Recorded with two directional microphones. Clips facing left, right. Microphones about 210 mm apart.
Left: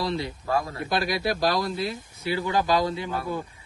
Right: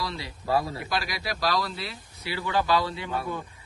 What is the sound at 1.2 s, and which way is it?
Speech, 50° left (ahead or behind).